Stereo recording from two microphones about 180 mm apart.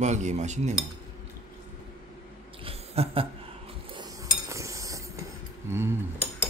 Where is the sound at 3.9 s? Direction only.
20° right (ahead or behind).